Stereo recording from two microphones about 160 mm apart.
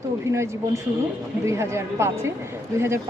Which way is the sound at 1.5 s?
15° right (ahead or behind).